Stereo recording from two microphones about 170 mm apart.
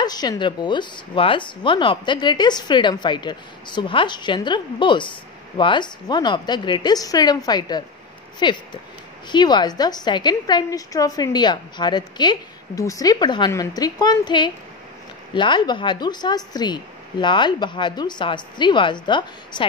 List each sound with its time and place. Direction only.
0.0 s a woman's voice: 25° left (ahead or behind)